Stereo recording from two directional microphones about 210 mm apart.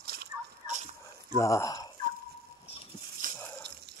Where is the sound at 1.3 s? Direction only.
15° left (ahead or behind).